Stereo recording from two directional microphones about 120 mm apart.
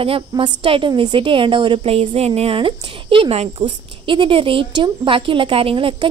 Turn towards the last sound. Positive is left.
turn(degrees=-45)  # may be behind; listen again after turning